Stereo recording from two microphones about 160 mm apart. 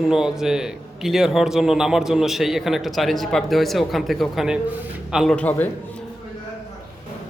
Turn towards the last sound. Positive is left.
turn(degrees=10)  # may be behind; listen again after turning